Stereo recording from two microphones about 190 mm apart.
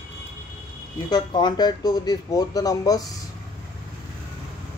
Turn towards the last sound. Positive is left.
turn(degrees=20)  # may be behind; listen again after turning